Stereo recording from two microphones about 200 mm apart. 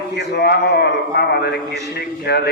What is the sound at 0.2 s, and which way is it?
A man's voice, 50° left (ahead or behind).